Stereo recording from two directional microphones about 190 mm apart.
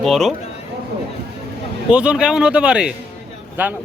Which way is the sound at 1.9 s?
5° right (ahead or behind).